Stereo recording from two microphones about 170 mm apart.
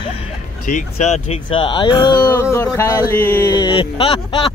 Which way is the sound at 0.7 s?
45° left (ahead or behind).